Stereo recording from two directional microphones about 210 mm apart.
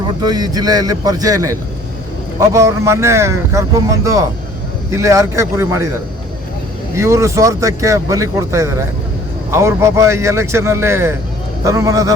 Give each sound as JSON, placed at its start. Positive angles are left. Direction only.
{"t": 0.2, "sound": "a man's voice", "side_deg": -20}
{"t": 6.9, "sound": "a man's voice", "side_deg": -15}